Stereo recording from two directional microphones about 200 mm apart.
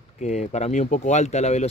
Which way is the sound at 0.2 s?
35° left (ahead or behind).